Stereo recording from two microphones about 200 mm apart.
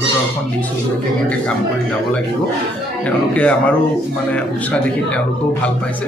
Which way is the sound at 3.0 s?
5° left (ahead or behind).